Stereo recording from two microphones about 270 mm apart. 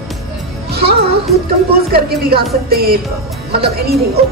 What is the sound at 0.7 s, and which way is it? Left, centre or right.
A woman's voice, right.